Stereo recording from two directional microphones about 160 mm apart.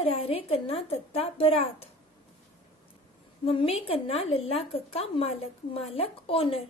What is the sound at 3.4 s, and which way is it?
A woman's voice, 40° left (ahead or behind).